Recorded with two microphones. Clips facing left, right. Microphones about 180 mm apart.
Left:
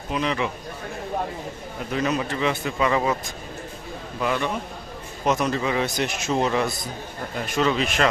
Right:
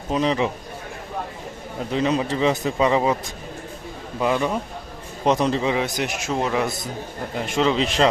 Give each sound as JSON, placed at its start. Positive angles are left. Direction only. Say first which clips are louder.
{"t": 0.1, "sound": "a man's voice", "louder": "right 4 dB", "side_deg": -35}
{"t": 1.9, "sound": "a man's voice", "louder": "right 3 dB", "side_deg": -25}
{"t": 4.2, "sound": "a man's voice", "louder": "right 3 dB", "side_deg": -30}
{"t": 5.7, "sound": "speech", "louder": "right 1 dB", "side_deg": -15}
{"t": 7.3, "sound": "a man's voice", "louder": "right 2 dB", "side_deg": -20}